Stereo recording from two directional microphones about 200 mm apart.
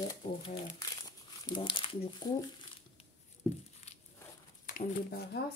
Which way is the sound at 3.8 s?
30° left (ahead or behind).